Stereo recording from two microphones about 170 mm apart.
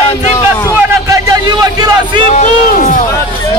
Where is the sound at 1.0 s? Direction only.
20° right (ahead or behind).